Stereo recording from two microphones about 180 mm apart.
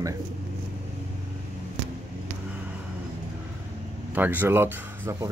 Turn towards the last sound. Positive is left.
turn(degrees=-10)  # may be behind; listen again after turning